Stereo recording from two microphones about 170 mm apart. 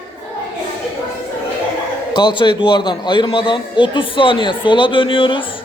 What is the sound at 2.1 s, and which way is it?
A man's voice, 25° left (ahead or behind).